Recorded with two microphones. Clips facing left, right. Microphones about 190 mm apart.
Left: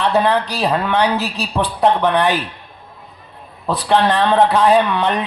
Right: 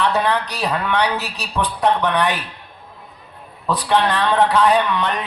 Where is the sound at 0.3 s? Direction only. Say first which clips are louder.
Left 4 dB; 30° left (ahead or behind).